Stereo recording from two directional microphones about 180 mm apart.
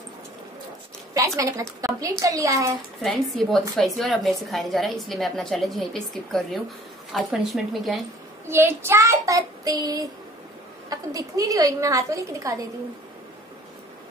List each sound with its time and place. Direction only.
1.1 s a woman's voice: 15° right (ahead or behind)
3.0 s a woman's voice: centre (ahead or behind)
8.5 s a woman's voice: 15° right (ahead or behind)